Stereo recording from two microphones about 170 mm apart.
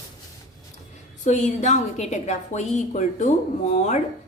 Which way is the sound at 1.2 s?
45° left (ahead or behind).